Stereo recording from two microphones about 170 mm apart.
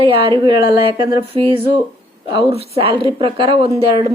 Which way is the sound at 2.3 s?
35° right (ahead or behind).